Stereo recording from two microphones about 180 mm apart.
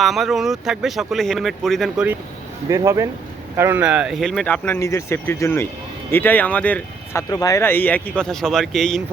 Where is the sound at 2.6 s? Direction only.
20° right (ahead or behind); by 9.0 s 5° left (ahead or behind).